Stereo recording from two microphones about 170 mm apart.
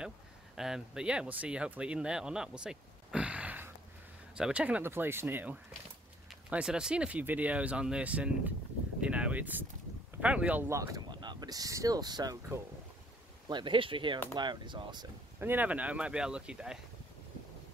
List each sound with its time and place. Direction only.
0.6 s speech: 5° right (ahead or behind)
9.0 s a sound: 5° right (ahead or behind)
10.2 s speech: 5° right (ahead or behind); by 12.4 s 25° right (ahead or behind)
13.5 s speech: 30° right (ahead or behind)
15.4 s speech: 10° right (ahead or behind)